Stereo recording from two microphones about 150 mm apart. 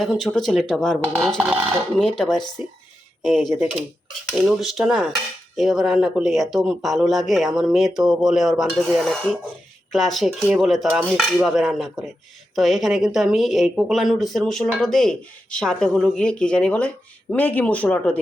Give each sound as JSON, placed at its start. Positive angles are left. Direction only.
{"t": 0.0, "sound": "a woman's voice", "side_deg": 5}
{"t": 1.4, "sound": "speech", "side_deg": -10}
{"t": 2.0, "sound": "a woman's voice", "side_deg": 0}